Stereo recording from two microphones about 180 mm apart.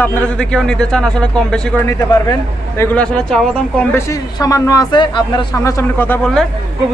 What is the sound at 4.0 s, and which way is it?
A man's voice, 20° left (ahead or behind).